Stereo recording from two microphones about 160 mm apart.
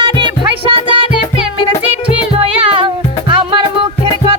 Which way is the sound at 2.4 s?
35° right (ahead or behind).